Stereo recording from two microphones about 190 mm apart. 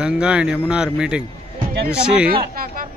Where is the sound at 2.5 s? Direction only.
50° right (ahead or behind).